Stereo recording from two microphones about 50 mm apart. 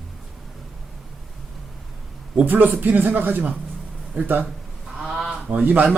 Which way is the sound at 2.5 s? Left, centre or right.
Right.